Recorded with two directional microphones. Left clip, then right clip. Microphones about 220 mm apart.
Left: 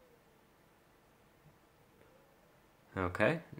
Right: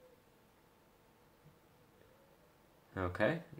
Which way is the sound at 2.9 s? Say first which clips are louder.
Left 3 dB; 25° left (ahead or behind).